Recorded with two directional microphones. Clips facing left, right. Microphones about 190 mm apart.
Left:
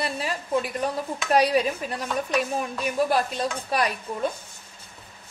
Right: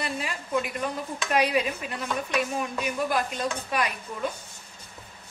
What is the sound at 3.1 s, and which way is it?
Speech, 35° left (ahead or behind).